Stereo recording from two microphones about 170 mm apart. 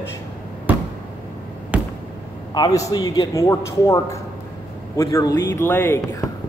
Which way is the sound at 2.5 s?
20° left (ahead or behind).